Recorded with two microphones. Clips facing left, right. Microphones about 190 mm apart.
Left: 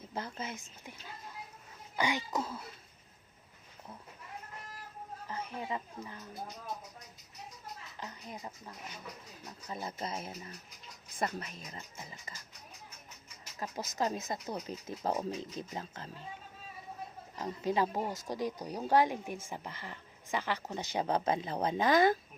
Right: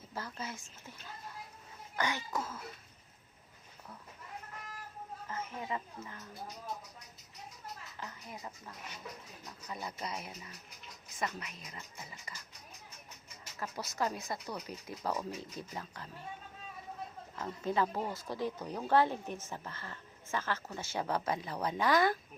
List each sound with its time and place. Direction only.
0.1 s speech: 20° left (ahead or behind)
2.0 s a woman's voice: 15° left (ahead or behind)
5.3 s a woman's voice: 15° left (ahead or behind)
7.9 s speech: 20° left (ahead or behind)
11.2 s speech: 40° left (ahead or behind)
11.7 s speech: 25° left (ahead or behind)
13.6 s speech: 20° left (ahead or behind)
17.3 s a woman's voice: 15° left (ahead or behind)